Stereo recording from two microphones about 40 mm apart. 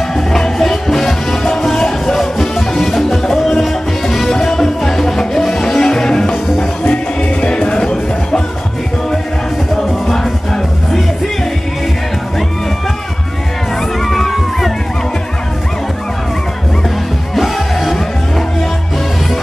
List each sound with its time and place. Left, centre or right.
0.1 s music: centre
1.7 s music: centre
7.4 s music: left
9.8 s music: centre
14.0 s crowd: centre
17.4 s music: centre